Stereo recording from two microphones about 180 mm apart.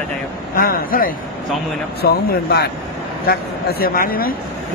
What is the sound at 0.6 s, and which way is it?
A man's voice, 55° left (ahead or behind).